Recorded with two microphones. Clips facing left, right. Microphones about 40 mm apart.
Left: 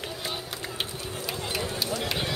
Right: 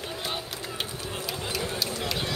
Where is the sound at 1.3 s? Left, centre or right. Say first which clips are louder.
Left 1 dB; centre.